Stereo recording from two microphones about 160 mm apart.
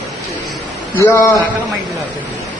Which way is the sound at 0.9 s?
15° left (ahead or behind).